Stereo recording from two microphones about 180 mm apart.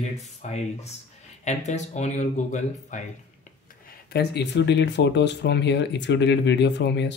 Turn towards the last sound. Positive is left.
turn(degrees=70)  # may be behind; listen again after turning